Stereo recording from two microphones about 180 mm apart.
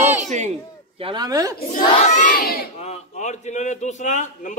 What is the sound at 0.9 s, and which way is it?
Speech, 25° right (ahead or behind).